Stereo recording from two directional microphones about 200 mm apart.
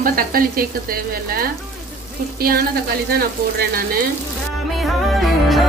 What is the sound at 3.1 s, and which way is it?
Speech, 50° right (ahead or behind).